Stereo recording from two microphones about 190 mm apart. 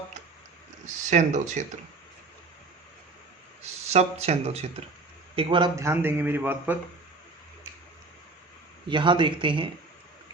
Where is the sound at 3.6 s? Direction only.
35° right (ahead or behind); by 6.7 s 10° right (ahead or behind).